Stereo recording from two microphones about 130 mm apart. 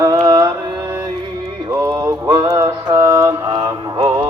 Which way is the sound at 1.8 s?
30° right (ahead or behind).